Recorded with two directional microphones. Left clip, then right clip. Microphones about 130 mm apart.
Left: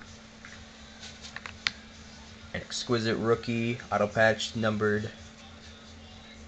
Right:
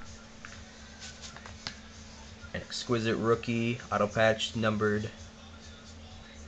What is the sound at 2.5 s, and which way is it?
Speech, 15° left (ahead or behind).